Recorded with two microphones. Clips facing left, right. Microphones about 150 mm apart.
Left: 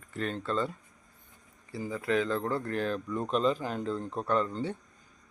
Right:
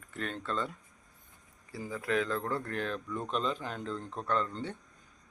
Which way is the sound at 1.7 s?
Centre (ahead or behind).